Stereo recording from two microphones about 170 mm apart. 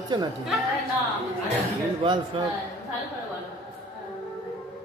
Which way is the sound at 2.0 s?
30° right (ahead or behind).